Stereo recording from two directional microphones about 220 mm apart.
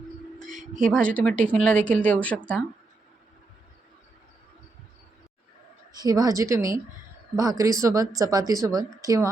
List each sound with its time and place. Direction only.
0.3 s a sound: 35° right (ahead or behind)
0.9 s a woman's voice: 5° left (ahead or behind)
6.0 s speech: 15° right (ahead or behind)